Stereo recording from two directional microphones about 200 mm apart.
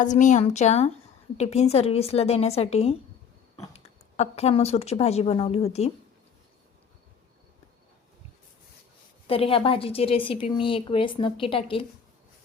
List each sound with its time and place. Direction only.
0.0 s a woman's voice: 40° left (ahead or behind)
4.2 s a woman's voice: 30° left (ahead or behind)
9.2 s a woman's voice: 30° left (ahead or behind)